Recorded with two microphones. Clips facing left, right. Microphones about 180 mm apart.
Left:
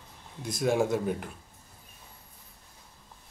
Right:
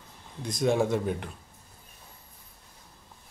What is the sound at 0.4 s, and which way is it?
Speech, 5° left (ahead or behind).